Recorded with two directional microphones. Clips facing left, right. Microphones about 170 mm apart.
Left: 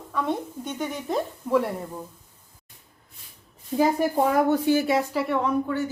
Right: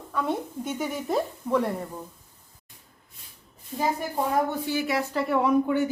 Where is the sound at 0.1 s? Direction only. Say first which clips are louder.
Left 1 dB; centre (ahead or behind).